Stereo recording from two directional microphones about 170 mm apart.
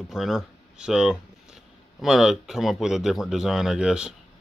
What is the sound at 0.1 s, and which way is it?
Speech, centre (ahead or behind).